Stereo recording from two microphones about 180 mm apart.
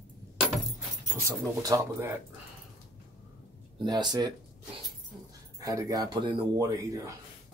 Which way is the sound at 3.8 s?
25° right (ahead or behind).